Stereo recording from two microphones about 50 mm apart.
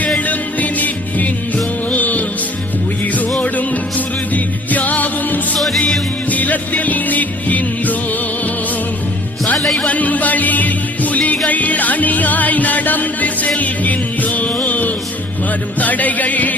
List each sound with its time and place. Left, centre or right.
0.2 s music: left
3.4 s music: left
5.5 s music: centre
6.3 s music: left
9.6 s music: centre
9.8 s music: left